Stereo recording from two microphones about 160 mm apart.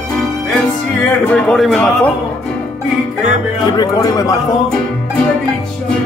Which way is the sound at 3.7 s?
25° left (ahead or behind).